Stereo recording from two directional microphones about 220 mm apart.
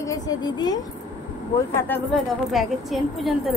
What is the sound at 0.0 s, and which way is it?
Speech, 15° left (ahead or behind).